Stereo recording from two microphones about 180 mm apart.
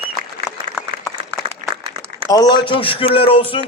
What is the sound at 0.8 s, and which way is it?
Applause, 5° right (ahead or behind).